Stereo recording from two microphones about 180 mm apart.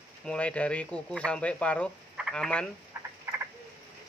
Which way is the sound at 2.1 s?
Centre (ahead or behind).